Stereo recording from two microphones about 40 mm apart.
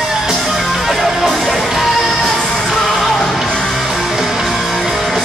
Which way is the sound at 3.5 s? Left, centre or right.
Centre.